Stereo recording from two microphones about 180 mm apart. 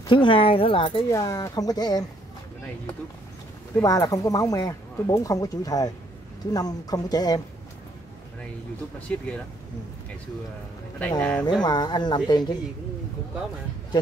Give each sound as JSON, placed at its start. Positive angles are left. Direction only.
{"t": 0.1, "sound": "speech", "side_deg": 30}
{"t": 3.8, "sound": "speech", "side_deg": 20}
{"t": 9.1, "sound": "speech", "side_deg": 10}
{"t": 11.0, "sound": "speech", "side_deg": 10}
{"t": 11.6, "sound": "speech", "side_deg": 25}